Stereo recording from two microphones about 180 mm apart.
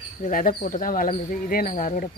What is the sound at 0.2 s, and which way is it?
Speech, 50° left (ahead or behind).